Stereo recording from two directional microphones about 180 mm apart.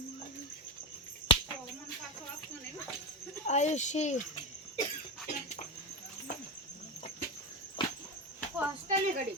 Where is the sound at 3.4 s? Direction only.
40° left (ahead or behind).